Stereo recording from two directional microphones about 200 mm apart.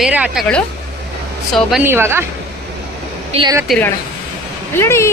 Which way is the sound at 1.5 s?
Centre (ahead or behind).